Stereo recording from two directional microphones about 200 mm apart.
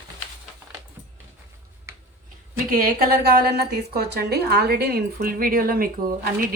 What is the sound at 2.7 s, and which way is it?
A woman's voice, 45° right (ahead or behind).